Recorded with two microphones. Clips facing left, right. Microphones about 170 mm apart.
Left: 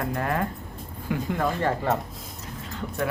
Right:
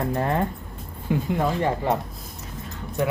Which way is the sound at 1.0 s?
20° right (ahead or behind).